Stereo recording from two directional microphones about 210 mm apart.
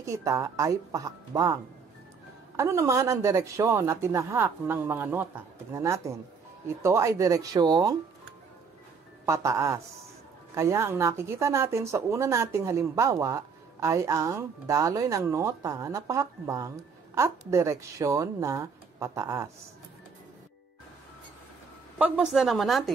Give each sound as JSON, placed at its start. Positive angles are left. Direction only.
{"t": 0.0, "sound": "speech", "side_deg": -15}
{"t": 9.2, "sound": "speech", "side_deg": -15}
{"t": 21.9, "sound": "a woman's voice", "side_deg": -5}